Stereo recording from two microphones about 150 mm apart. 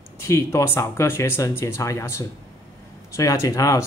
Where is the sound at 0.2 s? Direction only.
20° left (ahead or behind).